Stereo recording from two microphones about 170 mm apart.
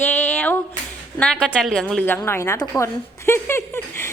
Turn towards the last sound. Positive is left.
turn(degrees=15)  # may be behind; listen again after turning